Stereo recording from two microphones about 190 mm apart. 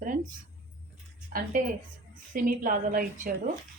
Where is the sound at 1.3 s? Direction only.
45° right (ahead or behind).